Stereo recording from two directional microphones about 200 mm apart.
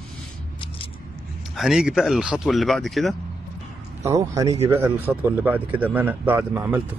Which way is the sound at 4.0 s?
15° right (ahead or behind).